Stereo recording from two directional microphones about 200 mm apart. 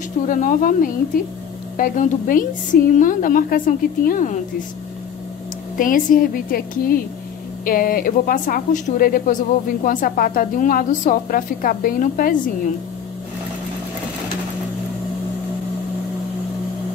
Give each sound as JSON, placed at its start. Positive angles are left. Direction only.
{"t": 0.3, "sound": "a woman's voice", "side_deg": 40}
{"t": 5.8, "sound": "a woman's voice", "side_deg": 40}